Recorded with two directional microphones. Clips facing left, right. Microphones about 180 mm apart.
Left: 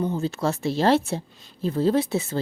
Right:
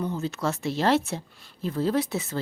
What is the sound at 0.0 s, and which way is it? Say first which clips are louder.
A woman's voice: left 3 dB; 30° left (ahead or behind).